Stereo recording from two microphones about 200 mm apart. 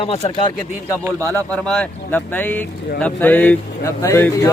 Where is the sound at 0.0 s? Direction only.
30° left (ahead or behind).